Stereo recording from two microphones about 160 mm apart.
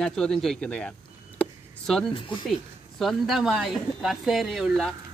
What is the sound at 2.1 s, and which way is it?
Speech, 30° left (ahead or behind).